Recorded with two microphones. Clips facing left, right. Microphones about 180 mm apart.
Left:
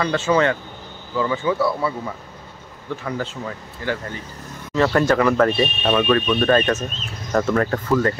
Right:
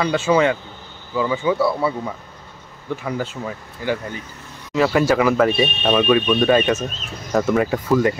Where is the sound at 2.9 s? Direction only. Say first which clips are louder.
Right 2 dB; 15° right (ahead or behind).